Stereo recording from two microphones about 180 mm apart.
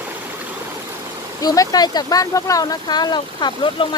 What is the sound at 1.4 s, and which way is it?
Speech, 20° left (ahead or behind).